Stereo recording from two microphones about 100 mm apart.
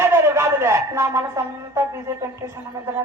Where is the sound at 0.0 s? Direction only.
25° right (ahead or behind).